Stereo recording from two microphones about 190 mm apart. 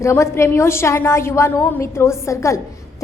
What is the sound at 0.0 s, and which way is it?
A woman's voice, 15° left (ahead or behind).